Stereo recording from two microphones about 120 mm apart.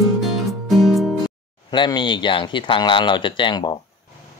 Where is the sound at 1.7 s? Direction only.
40° left (ahead or behind).